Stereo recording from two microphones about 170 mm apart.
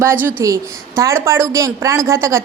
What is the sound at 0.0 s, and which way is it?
A woman's voice, 15° right (ahead or behind).